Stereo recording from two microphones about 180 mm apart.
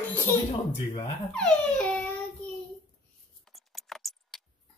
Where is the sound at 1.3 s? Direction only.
5° left (ahead or behind).